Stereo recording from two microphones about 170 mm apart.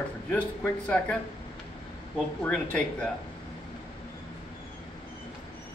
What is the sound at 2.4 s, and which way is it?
Speech, 5° left (ahead or behind).